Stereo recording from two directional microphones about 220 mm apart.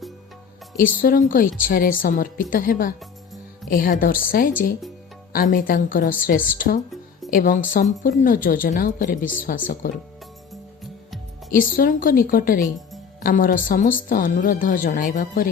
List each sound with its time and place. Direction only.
0.8 s a woman's voice: 40° left (ahead or behind)
11.5 s a woman's voice: 40° left (ahead or behind)